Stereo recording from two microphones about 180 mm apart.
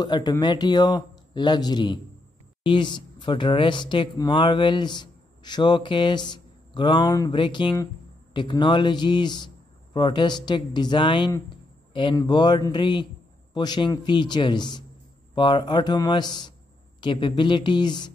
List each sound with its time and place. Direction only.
0.0 s speech: 20° left (ahead or behind)